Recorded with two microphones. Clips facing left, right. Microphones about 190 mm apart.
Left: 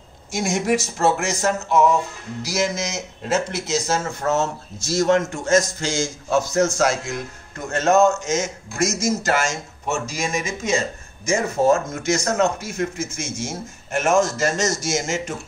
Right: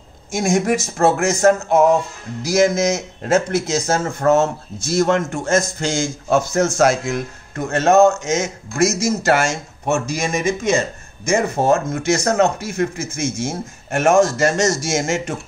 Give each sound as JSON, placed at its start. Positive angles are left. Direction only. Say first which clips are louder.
{"t": 0.3, "sound": "a man's voice", "louder": "right 3 dB", "side_deg": -50}